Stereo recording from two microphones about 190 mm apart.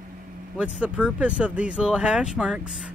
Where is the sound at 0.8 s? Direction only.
5° right (ahead or behind).